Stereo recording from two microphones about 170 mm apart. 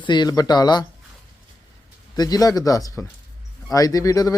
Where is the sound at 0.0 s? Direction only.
25° left (ahead or behind).